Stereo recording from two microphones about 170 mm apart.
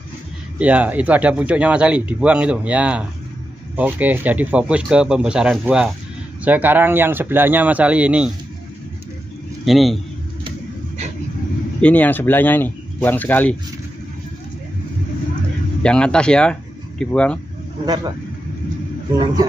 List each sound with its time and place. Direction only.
0.6 s speech: 10° right (ahead or behind)
9.7 s speech: centre (ahead or behind)
11.8 s speech: 10° left (ahead or behind)
15.8 s speech: 5° left (ahead or behind)
17.8 s speech: 25° right (ahead or behind)